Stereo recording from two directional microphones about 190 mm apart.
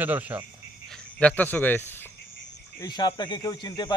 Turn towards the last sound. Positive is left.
turn(degrees=25)  # may be behind; listen again after turning